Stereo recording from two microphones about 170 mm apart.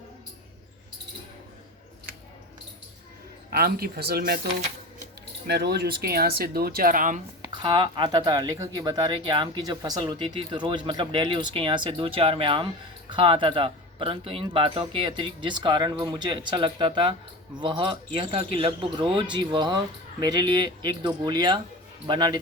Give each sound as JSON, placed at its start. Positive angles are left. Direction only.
{"t": 3.5, "sound": "speech", "side_deg": -65}
{"t": 5.5, "sound": "speech", "side_deg": -75}
{"t": 7.4, "sound": "speech", "side_deg": -25}